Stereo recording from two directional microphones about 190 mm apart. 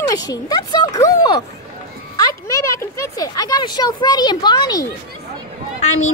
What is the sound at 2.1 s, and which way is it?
Speech, 15° left (ahead or behind).